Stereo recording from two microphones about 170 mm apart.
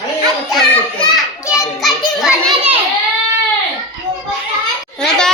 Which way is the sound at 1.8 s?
Centre (ahead or behind).